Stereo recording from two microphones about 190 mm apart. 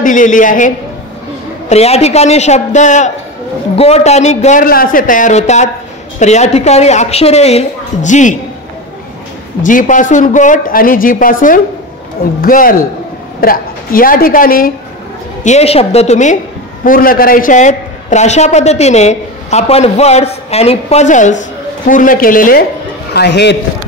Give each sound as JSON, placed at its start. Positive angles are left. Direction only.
{"t": 0.0, "sound": "a man's voice", "side_deg": 45}
{"t": 9.6, "sound": "speech", "side_deg": 45}
{"t": 15.4, "sound": "a man's voice", "side_deg": 35}
{"t": 16.8, "sound": "a man's voice", "side_deg": 50}
{"t": 23.1, "sound": "a man's voice", "side_deg": 60}